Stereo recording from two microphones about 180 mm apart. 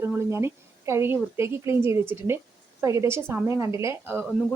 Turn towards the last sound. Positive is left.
turn(degrees=-15)  # may be behind; listen again after turning